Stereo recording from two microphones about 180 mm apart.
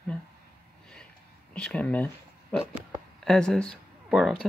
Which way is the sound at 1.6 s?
5° left (ahead or behind).